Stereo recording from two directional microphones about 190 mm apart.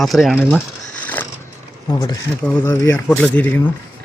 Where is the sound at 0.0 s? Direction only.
Centre (ahead or behind).